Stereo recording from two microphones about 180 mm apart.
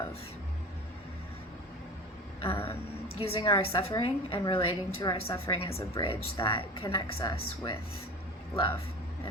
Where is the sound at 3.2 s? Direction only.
30° left (ahead or behind).